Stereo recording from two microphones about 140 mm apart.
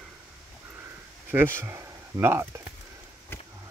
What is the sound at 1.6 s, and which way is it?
Speech, 20° right (ahead or behind).